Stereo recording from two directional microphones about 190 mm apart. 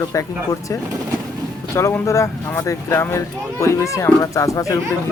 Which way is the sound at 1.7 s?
15° left (ahead or behind).